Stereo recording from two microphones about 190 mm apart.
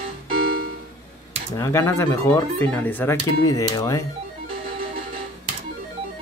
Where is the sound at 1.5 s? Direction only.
15° left (ahead or behind).